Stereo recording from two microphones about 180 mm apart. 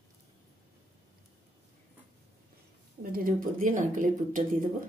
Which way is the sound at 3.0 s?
55° right (ahead or behind).